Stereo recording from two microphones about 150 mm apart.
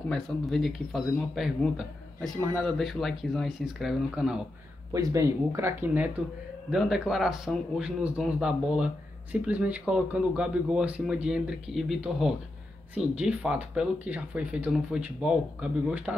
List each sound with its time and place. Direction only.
0.1 s a man's voice: centre (ahead or behind)
4.9 s speech: 20° right (ahead or behind)
6.7 s a man's voice: centre (ahead or behind)